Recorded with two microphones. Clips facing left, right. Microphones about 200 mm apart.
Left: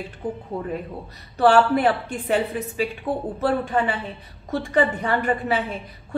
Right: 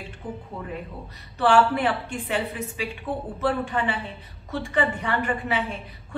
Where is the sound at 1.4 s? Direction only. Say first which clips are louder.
Left 3 dB; 40° left (ahead or behind).